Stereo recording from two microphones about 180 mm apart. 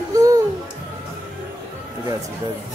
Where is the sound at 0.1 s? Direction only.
20° right (ahead or behind).